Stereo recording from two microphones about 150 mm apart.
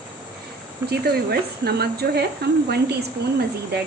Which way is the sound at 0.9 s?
90° right.